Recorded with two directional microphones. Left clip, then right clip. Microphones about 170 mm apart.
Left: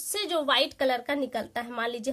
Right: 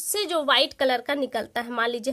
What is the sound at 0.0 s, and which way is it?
A woman's voice, 35° right (ahead or behind).